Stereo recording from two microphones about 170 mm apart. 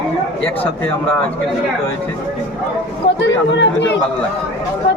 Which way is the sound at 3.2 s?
90° left.